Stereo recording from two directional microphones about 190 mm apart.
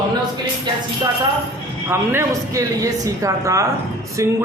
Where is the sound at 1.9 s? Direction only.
15° right (ahead or behind).